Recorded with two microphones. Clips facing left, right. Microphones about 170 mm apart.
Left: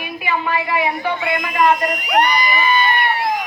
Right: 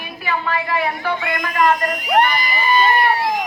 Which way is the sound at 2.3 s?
40° right (ahead or behind).